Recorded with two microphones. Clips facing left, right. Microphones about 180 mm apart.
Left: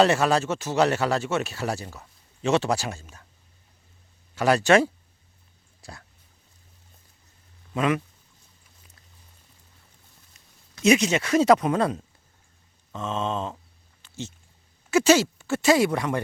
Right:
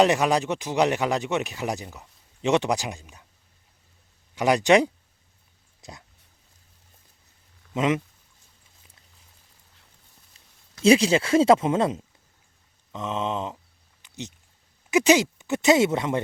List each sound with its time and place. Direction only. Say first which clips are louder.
0.0 s speech: even; 15° right (ahead or behind)
4.4 s speech: even; 15° right (ahead or behind)
7.7 s speech: right 1 dB; 20° right (ahead or behind)
10.8 s speech: right 2 dB; 30° right (ahead or behind)
14.0 s a sound: left 1 dB; 15° right (ahead or behind)
14.8 s speech: even; 15° right (ahead or behind)